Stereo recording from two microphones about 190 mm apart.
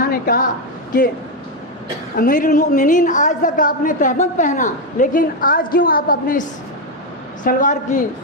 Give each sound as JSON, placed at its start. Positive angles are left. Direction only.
{"t": 0.0, "sound": "a woman's voice", "side_deg": 50}
{"t": 2.1, "sound": "a woman's voice", "side_deg": 45}
{"t": 7.4, "sound": "a woman's voice", "side_deg": 40}